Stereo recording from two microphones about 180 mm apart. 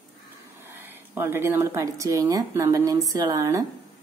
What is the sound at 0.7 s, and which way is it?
Speech, 10° right (ahead or behind).